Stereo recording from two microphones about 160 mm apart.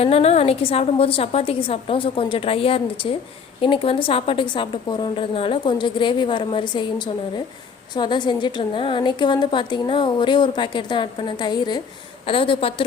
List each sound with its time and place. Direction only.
0.0 s a woman's voice: 40° left (ahead or behind)